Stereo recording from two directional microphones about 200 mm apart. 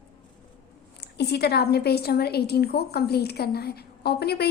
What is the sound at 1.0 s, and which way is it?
A woman's voice, 55° left (ahead or behind).